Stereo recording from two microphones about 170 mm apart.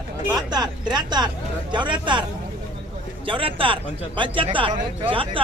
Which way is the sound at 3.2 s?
30° right (ahead or behind).